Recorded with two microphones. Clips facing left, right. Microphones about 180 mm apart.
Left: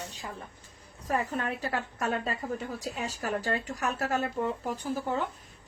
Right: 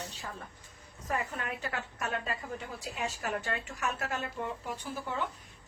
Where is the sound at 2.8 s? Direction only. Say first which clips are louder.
Left 2 dB; 40° left (ahead or behind).